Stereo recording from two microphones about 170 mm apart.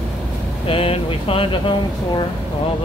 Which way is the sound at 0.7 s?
35° left (ahead or behind).